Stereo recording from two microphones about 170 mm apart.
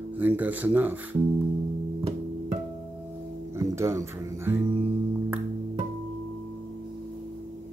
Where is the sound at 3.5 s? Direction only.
15° right (ahead or behind).